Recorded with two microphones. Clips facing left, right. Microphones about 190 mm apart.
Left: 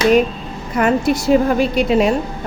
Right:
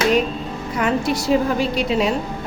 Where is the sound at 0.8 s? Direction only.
50° left (ahead or behind).